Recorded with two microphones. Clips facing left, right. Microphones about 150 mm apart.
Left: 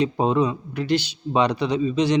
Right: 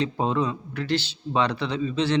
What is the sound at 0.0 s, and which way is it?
Speech, 15° left (ahead or behind).